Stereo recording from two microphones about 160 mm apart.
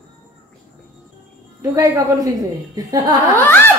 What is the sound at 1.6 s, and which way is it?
A woman's voice, 20° right (ahead or behind).